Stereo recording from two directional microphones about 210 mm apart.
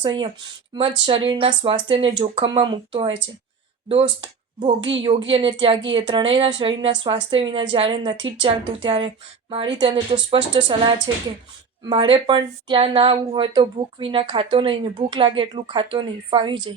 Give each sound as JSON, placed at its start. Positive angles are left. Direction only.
{"t": 0.0, "sound": "a woman's voice", "side_deg": -20}
{"t": 4.8, "sound": "a woman's voice", "side_deg": -60}
{"t": 5.3, "sound": "a woman's voice", "side_deg": -25}